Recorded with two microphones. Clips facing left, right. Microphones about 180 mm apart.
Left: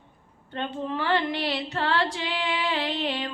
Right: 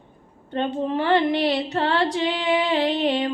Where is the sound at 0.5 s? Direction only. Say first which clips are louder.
Right 7 dB; 20° right (ahead or behind).